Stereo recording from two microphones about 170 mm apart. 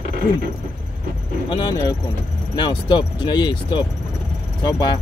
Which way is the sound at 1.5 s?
25° left (ahead or behind).